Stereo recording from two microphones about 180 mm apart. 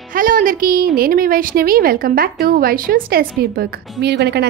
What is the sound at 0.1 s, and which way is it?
A woman's voice, 50° right (ahead or behind).